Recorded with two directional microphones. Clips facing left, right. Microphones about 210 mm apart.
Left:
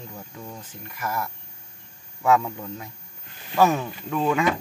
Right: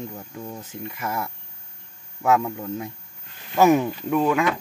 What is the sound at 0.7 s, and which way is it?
Speech, 25° right (ahead or behind).